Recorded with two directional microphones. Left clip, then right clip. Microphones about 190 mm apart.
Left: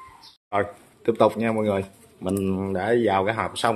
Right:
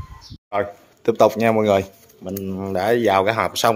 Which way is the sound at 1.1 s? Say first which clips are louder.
Right 5 dB; 20° right (ahead or behind).